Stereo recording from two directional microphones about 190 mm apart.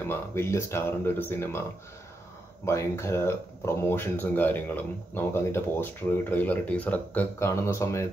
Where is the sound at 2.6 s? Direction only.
15° left (ahead or behind).